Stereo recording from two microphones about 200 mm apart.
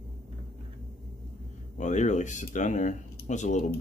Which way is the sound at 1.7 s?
35° left (ahead or behind).